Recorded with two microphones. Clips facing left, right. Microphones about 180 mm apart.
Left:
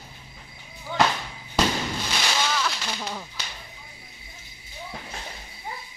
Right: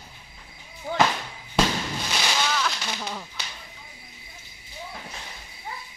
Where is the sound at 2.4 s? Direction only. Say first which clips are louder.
Even; centre (ahead or behind).